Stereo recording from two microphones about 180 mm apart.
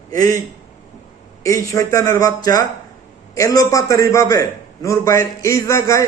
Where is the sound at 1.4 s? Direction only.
15° left (ahead or behind).